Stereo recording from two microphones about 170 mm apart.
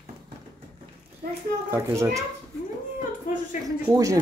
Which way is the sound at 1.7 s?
15° right (ahead or behind).